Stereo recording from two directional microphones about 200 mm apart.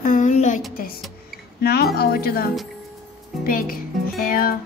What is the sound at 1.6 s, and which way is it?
Music, 50° left (ahead or behind).